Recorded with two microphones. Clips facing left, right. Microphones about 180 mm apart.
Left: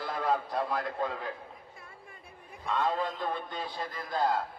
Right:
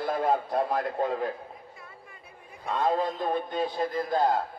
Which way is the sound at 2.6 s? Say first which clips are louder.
Right 4 dB; 45° right (ahead or behind).